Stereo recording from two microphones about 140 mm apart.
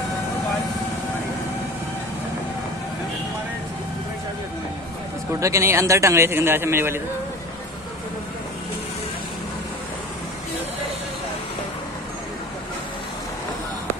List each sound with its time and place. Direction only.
5.4 s a man's voice: 20° right (ahead or behind)